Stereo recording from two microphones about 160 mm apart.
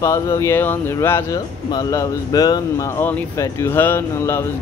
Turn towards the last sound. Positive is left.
turn(degrees=15)  # may be behind; listen again after turning